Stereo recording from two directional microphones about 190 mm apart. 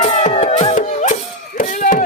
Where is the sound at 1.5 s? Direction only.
40° left (ahead or behind).